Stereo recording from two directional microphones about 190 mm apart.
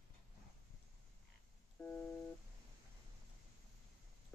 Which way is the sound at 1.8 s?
10° left (ahead or behind).